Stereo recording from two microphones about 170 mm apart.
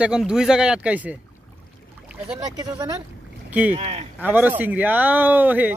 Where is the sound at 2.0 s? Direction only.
5° right (ahead or behind).